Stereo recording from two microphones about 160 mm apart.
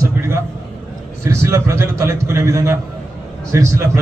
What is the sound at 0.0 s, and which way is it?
A man's voice, 20° right (ahead or behind).